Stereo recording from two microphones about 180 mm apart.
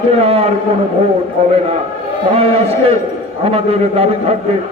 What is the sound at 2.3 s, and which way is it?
A man's voice, 35° right (ahead or behind).